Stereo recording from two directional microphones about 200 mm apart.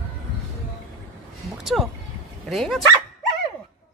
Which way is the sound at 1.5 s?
Centre (ahead or behind).